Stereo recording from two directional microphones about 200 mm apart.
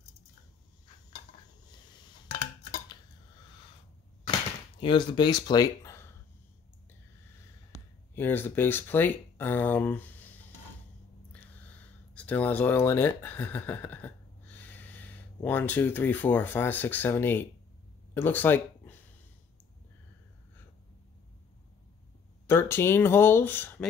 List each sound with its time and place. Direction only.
2.3 s a sound: 30° left (ahead or behind)
4.7 s speech: 25° left (ahead or behind)
8.1 s speech: 10° left (ahead or behind)
11.5 s speech: 5° left (ahead or behind)
22.5 s speech: 10° left (ahead or behind)